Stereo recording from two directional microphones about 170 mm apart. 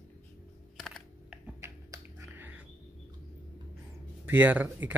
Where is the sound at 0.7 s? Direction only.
Centre (ahead or behind).